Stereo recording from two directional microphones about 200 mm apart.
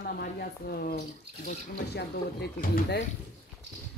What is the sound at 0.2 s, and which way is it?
Speech, 50° left (ahead or behind).